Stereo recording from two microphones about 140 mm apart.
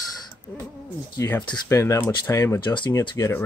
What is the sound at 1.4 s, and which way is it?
Speech, 30° left (ahead or behind).